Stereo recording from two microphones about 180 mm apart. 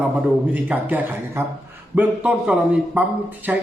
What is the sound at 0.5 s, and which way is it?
A man's voice, 10° right (ahead or behind).